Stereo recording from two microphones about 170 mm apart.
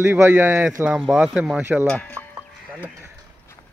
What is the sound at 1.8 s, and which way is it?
Speech, 5° left (ahead or behind).